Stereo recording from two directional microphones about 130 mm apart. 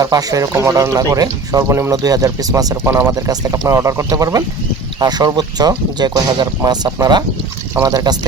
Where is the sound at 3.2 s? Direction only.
30° right (ahead or behind).